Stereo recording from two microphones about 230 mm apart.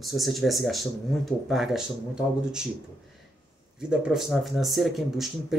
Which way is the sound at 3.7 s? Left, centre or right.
Centre.